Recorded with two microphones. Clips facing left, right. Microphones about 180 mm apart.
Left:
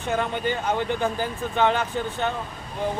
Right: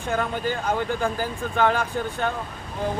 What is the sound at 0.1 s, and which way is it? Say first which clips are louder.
Speech: even; centre (ahead or behind).